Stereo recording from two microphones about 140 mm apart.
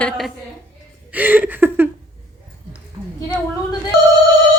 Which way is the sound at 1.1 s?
10° right (ahead or behind).